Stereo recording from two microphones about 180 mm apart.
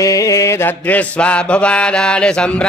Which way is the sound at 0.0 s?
15° left (ahead or behind).